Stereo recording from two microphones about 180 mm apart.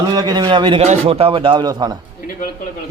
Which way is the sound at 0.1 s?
20° right (ahead or behind).